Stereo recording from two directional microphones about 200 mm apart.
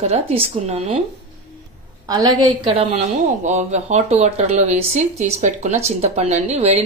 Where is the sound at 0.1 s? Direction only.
30° right (ahead or behind).